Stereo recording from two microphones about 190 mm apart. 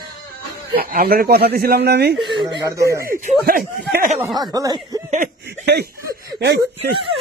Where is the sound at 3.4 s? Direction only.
50° right (ahead or behind).